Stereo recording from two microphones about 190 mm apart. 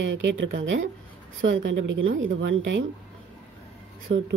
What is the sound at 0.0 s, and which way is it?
A woman's voice, 70° right (ahead or behind).